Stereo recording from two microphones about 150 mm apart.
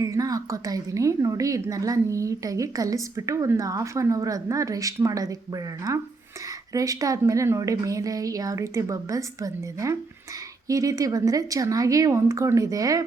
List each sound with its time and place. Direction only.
0.0 s a woman's voice: 25° right (ahead or behind)